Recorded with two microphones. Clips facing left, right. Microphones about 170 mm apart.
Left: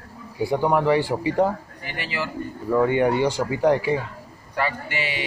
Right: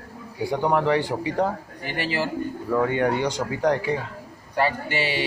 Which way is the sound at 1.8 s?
35° right (ahead or behind).